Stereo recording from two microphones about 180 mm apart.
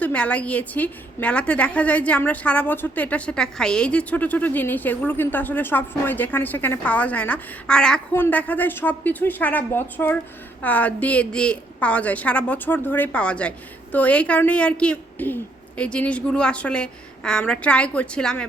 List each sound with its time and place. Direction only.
0.0 s a woman's voice: 5° left (ahead or behind)